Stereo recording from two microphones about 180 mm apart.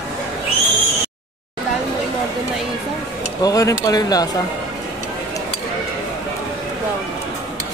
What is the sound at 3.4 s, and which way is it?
Speech, 20° left (ahead or behind).